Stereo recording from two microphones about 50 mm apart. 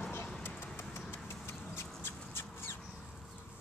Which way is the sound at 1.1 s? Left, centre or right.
Left.